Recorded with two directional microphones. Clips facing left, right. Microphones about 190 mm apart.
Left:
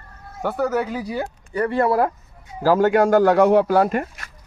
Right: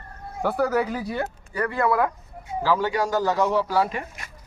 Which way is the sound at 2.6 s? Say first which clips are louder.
Left 7 dB; 45° left (ahead or behind).